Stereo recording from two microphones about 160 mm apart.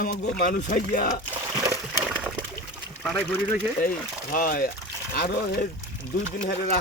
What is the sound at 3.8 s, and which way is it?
Speech, 60° left (ahead or behind).